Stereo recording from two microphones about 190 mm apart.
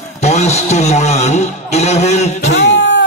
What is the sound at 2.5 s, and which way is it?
Music, 70° left (ahead or behind).